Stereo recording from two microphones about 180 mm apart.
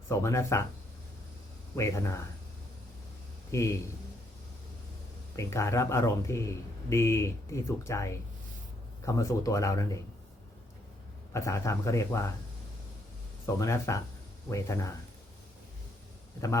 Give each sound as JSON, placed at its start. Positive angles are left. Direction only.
{"t": 0.1, "sound": "speech", "side_deg": 15}
{"t": 1.7, "sound": "speech", "side_deg": 15}
{"t": 3.5, "sound": "speech", "side_deg": 15}
{"t": 5.4, "sound": "speech", "side_deg": 15}
{"t": 11.3, "sound": "speech", "side_deg": 15}
{"t": 13.6, "sound": "speech", "side_deg": 15}